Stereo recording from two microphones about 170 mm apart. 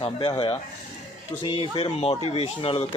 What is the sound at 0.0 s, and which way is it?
Speech, 35° left (ahead or behind).